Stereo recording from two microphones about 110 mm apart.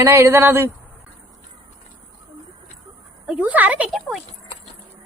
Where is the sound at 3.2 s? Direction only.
10° right (ahead or behind).